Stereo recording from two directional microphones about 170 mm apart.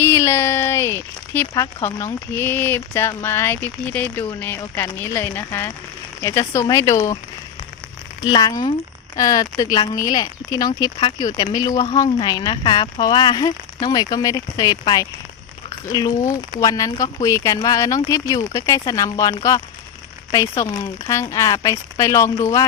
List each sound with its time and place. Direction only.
0.0 s a sound: 15° left (ahead or behind)
2.3 s speech: 15° left (ahead or behind)
8.2 s speech: 25° left (ahead or behind)